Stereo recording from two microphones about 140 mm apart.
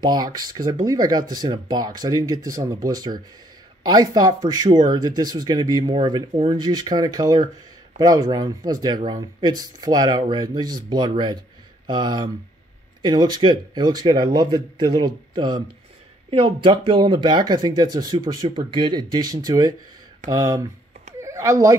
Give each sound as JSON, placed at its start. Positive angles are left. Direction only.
{"t": 0.0, "sound": "speech", "side_deg": -30}